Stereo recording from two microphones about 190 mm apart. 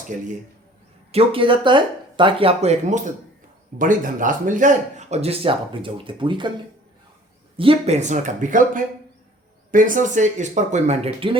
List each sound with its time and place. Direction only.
1.1 s speech: 30° right (ahead or behind)
7.5 s speech: 30° right (ahead or behind)